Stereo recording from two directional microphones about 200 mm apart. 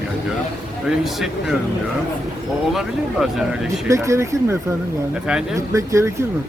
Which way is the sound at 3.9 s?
15° right (ahead or behind).